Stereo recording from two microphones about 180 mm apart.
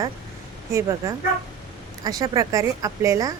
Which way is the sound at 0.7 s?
15° right (ahead or behind).